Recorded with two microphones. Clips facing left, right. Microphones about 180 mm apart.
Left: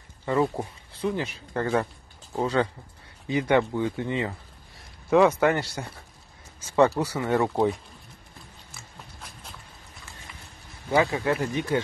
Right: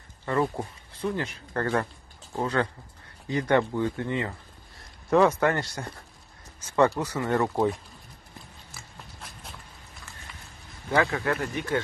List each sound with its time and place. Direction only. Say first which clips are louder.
0.2 s speech: left 2 dB; 10° left (ahead or behind)
5.1 s speech: left 2 dB; 5° left (ahead or behind)
8.7 s a sound: even; centre (ahead or behind)
11.0 s speech: left 2 dB; 20° left (ahead or behind)